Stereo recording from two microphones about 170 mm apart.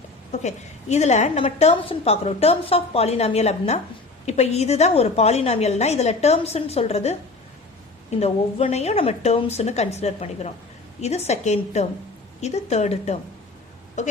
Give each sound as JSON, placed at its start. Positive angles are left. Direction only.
{"t": 0.3, "sound": "a woman's voice", "side_deg": 40}
{"t": 8.2, "sound": "a woman's voice", "side_deg": 35}